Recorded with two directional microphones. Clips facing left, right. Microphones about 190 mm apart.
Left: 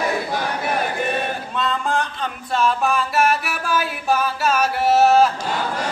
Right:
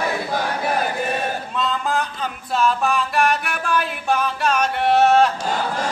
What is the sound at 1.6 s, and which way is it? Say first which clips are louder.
Music: left 1 dB; centre (ahead or behind).